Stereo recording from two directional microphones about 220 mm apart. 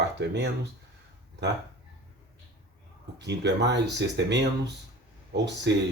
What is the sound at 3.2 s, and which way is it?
Speech, 50° right (ahead or behind).